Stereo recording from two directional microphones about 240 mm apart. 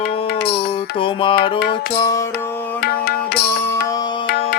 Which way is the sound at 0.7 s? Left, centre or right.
Left.